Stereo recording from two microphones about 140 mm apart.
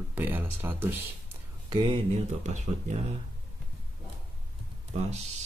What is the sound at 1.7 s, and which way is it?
Speech, 40° right (ahead or behind).